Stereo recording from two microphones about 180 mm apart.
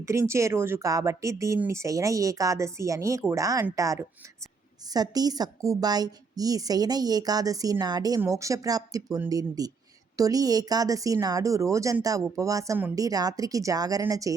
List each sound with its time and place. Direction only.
0.0 s speech: 15° right (ahead or behind)